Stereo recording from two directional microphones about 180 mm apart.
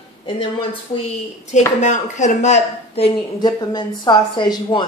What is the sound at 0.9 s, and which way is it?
Speech, 40° left (ahead or behind).